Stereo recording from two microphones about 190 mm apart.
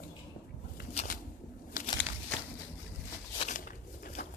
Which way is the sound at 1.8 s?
45° left (ahead or behind).